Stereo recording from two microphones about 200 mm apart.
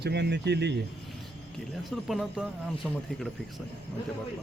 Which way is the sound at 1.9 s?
Centre (ahead or behind).